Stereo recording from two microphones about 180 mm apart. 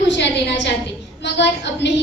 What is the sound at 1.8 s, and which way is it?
Speech, 75° left (ahead or behind).